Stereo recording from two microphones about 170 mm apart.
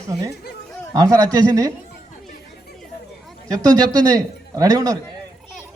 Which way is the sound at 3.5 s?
25° right (ahead or behind).